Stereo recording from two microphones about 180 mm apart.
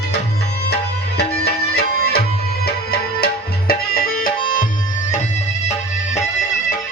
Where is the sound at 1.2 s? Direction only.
65° left (ahead or behind).